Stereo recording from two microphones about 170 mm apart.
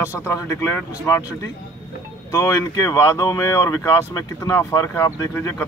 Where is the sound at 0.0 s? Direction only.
15° left (ahead or behind).